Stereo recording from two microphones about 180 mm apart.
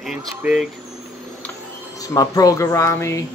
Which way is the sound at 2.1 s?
20° left (ahead or behind).